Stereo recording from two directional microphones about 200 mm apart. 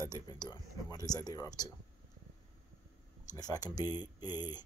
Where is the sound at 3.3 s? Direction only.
20° left (ahead or behind).